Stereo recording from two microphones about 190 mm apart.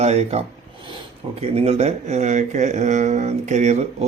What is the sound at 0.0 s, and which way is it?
Speech, 35° right (ahead or behind).